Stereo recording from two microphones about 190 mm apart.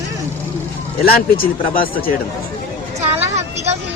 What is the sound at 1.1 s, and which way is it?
Speech, 50° left (ahead or behind).